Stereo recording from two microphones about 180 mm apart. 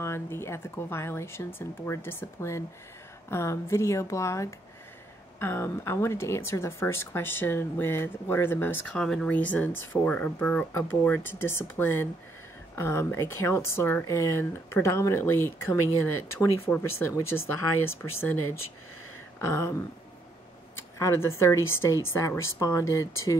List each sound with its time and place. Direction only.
0.0 s speech: 15° left (ahead or behind)